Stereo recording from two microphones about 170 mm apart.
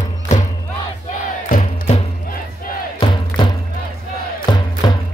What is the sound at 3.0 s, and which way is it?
Music, 25° left (ahead or behind).